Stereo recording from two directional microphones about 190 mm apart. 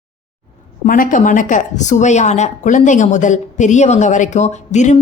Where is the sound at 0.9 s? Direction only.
45° left (ahead or behind).